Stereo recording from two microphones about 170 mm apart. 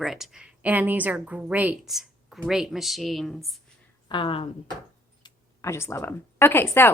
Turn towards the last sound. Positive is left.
turn(degrees=15)  # may be behind; listen again after turning